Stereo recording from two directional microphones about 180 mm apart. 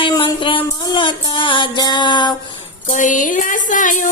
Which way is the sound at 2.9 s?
45° left (ahead or behind).